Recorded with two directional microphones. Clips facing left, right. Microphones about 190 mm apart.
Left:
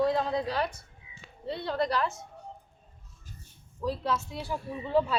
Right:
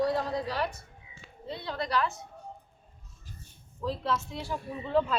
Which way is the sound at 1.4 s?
60° left (ahead or behind).